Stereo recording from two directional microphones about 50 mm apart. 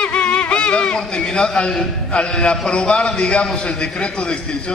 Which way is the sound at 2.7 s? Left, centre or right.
Left.